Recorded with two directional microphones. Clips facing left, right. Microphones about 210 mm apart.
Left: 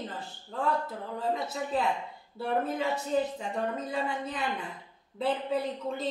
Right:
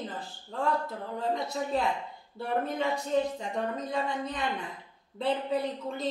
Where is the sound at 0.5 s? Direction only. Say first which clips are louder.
Even; 5° left (ahead or behind).